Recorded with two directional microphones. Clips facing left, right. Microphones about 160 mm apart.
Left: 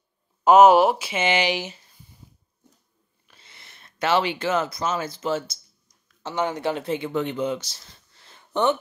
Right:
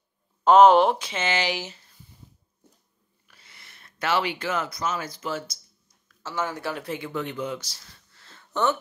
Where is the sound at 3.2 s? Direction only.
25° left (ahead or behind).